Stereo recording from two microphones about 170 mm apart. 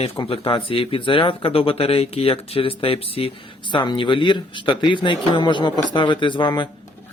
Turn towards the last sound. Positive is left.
turn(degrees=30)  # may be behind; listen again after turning